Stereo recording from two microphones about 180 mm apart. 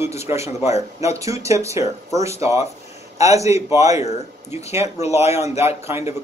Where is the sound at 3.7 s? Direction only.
15° right (ahead or behind).